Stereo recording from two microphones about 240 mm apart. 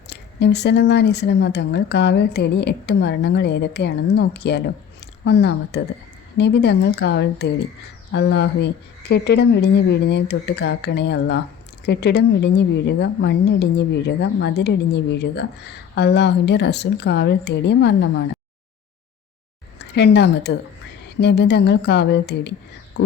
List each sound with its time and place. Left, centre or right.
0.1 s a woman's voice: left
19.8 s a woman's voice: left